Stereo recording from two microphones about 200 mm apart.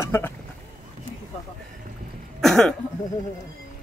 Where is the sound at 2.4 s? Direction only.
Centre (ahead or behind).